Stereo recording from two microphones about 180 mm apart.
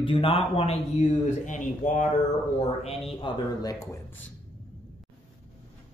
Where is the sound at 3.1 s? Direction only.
30° left (ahead or behind).